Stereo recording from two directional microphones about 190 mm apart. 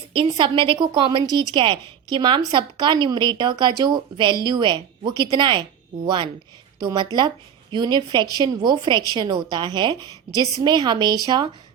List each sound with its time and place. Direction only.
0.1 s a woman's voice: 25° right (ahead or behind)